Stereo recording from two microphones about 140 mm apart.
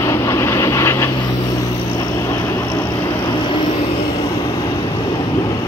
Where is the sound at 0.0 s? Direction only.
20° left (ahead or behind).